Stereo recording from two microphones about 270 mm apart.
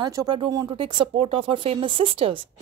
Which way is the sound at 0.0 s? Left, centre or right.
Centre.